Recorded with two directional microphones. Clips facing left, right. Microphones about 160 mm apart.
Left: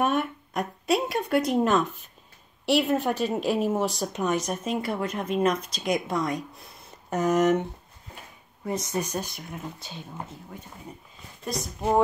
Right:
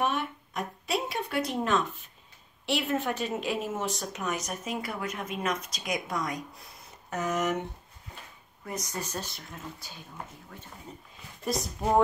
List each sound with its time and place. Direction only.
0.0 s a sound: 50° left (ahead or behind)
3.0 s speech: 35° left (ahead or behind)
8.6 s speech: 25° left (ahead or behind)
11.4 s speech: centre (ahead or behind)